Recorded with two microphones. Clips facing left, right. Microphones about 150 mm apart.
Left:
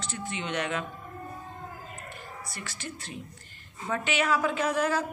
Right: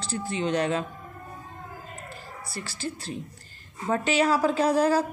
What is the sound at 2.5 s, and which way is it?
A woman's voice, 30° right (ahead or behind).